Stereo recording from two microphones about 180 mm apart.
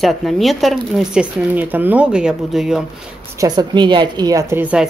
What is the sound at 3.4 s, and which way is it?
A woman's voice, 25° right (ahead or behind).